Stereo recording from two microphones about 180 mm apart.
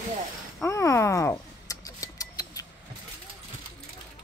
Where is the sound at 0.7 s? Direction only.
15° left (ahead or behind).